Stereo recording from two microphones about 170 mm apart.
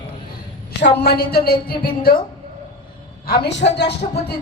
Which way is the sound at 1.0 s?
65° left (ahead or behind).